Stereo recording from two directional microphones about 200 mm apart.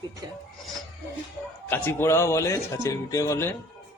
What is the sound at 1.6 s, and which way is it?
Speech, 10° left (ahead or behind).